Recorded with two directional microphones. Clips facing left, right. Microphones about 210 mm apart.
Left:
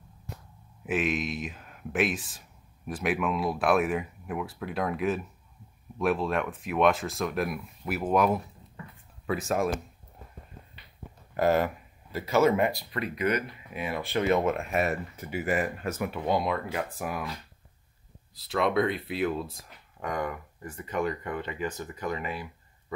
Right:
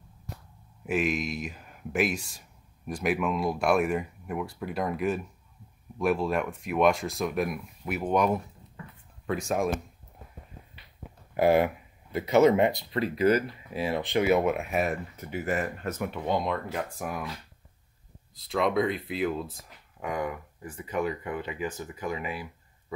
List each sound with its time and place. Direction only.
0.8 s speech: centre (ahead or behind)
11.3 s speech: 10° right (ahead or behind); by 14.0 s 30° right (ahead or behind)
14.0 s speech: 15° right (ahead or behind)
14.3 s speech: 5° right (ahead or behind)